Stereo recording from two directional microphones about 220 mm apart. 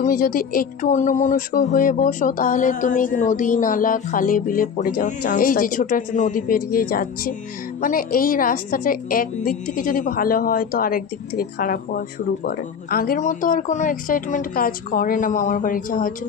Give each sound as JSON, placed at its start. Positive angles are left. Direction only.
{"t": 0.0, "sound": "speech", "side_deg": 40}